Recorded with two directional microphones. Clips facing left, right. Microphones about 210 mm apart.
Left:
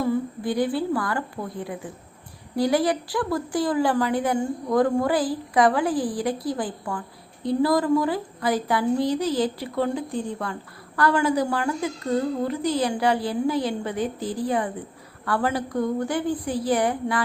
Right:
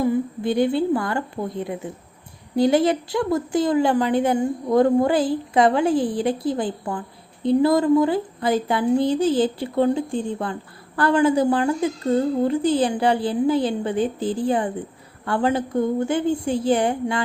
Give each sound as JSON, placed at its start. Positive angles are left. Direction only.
{"t": 0.0, "sound": "a woman's voice", "side_deg": -20}